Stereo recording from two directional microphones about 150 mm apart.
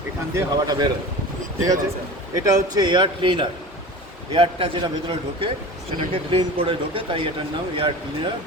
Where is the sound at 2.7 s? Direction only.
30° right (ahead or behind).